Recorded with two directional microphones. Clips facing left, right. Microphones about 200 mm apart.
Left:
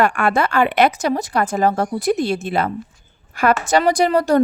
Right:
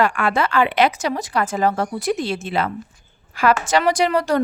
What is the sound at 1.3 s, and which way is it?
Speech, 40° left (ahead or behind).